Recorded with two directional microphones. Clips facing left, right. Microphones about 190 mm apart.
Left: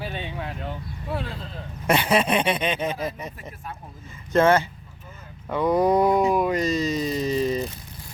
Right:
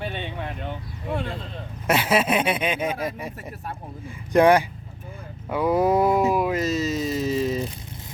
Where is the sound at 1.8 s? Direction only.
5° right (ahead or behind).